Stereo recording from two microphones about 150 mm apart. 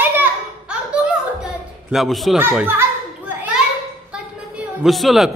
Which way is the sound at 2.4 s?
15° right (ahead or behind).